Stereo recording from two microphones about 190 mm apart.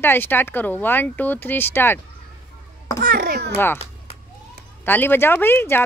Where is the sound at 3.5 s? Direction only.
10° left (ahead or behind).